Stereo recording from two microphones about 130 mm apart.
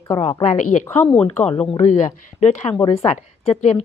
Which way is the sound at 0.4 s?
70° left (ahead or behind).